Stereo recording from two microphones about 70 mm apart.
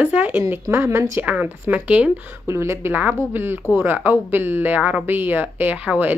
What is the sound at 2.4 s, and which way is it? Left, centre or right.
Speech, right.